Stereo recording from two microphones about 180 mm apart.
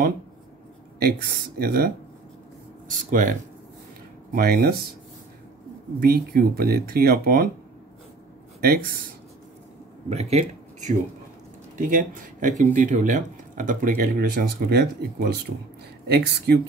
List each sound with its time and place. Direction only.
0.9 s speech: 60° right (ahead or behind)
3.1 s speech: 45° right (ahead or behind)
4.4 s speech: 60° right (ahead or behind)
5.9 s speech: 55° right (ahead or behind)
8.5 s speech: 55° right (ahead or behind)
10.0 s speech: 35° right (ahead or behind)
11.7 s speech: 50° right (ahead or behind); by 16.5 s 65° right (ahead or behind)